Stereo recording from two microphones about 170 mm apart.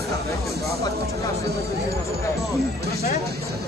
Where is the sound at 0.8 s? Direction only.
20° left (ahead or behind).